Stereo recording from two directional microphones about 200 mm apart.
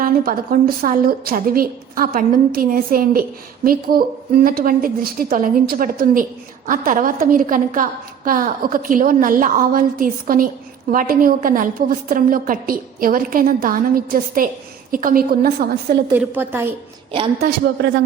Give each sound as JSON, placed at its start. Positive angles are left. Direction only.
{"t": 0.0, "sound": "a woman's voice", "side_deg": -45}
{"t": 16.1, "sound": "a woman's voice", "side_deg": -10}
{"t": 17.1, "sound": "a woman's voice", "side_deg": -25}
{"t": 17.7, "sound": "speech", "side_deg": -55}